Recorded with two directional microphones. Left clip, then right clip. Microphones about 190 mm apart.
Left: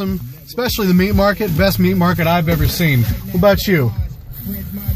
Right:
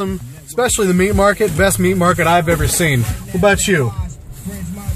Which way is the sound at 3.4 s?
30° left (ahead or behind).